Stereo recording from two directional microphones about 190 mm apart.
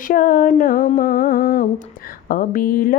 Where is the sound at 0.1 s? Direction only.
45° left (ahead or behind).